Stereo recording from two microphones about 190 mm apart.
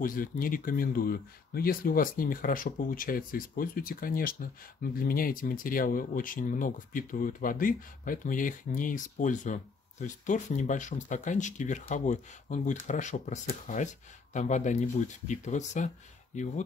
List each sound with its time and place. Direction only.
0.0 s speech: 45° left (ahead or behind)